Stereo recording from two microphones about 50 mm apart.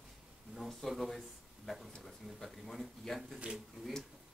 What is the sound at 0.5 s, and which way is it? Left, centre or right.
Speech, centre.